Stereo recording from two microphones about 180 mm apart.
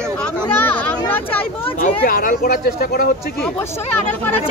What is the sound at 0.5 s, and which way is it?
Children playing, 10° left (ahead or behind).